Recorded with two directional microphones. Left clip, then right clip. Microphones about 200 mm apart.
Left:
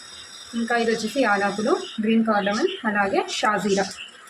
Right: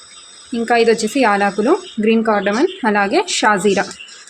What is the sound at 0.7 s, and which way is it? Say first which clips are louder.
A woman's voice: right 9 dB; 50° right (ahead or behind).